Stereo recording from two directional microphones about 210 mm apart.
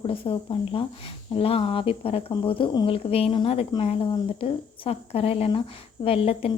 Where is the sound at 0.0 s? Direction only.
25° left (ahead or behind).